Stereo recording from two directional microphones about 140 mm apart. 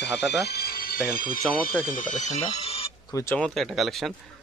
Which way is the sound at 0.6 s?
90° left.